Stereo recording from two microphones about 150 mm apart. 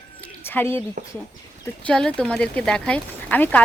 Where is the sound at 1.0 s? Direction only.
65° right (ahead or behind).